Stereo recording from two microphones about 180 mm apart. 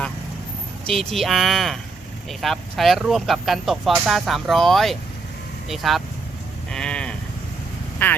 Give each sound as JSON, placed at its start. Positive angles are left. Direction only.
{"t": 0.9, "sound": "speech", "side_deg": 0}
{"t": 6.7, "sound": "sheep", "side_deg": 5}
{"t": 8.0, "sound": "speech", "side_deg": 10}